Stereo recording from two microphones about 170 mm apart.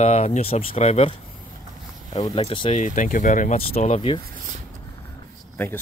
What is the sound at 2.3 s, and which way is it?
Speech, 30° left (ahead or behind).